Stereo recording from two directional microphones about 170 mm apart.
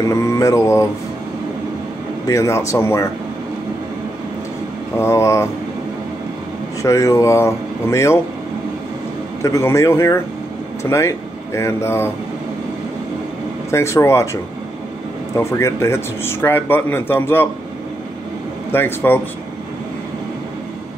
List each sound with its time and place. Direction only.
0.0 s mantra: 15° left (ahead or behind)
2.2 s speech: 15° left (ahead or behind)
4.9 s speech: 15° left (ahead or behind)
6.8 s speech: 20° left (ahead or behind)
9.4 s speech: 15° left (ahead or behind)
13.7 s speech: 15° left (ahead or behind)
18.7 s speech: 10° left (ahead or behind)